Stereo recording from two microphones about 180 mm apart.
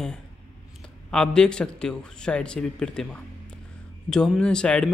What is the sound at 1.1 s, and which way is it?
A man's voice, 5° left (ahead or behind).